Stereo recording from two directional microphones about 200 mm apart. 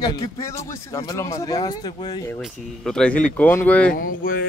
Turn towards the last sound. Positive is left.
turn(degrees=45)  # may be behind; listen again after turning